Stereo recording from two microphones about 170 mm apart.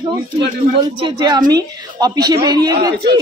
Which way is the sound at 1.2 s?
25° right (ahead or behind).